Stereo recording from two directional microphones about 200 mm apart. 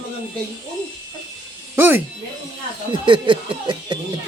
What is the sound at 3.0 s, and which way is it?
Speech, 25° right (ahead or behind).